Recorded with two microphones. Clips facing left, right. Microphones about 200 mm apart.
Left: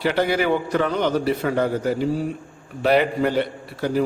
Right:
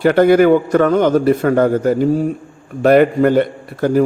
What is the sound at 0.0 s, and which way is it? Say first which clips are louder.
A man's voice: right 10 dB; 50° right (ahead or behind).